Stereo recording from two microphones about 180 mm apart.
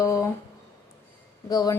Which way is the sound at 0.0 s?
15° left (ahead or behind).